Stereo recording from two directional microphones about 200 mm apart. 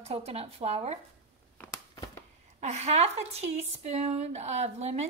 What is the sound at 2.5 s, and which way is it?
A woman's voice, 35° right (ahead or behind).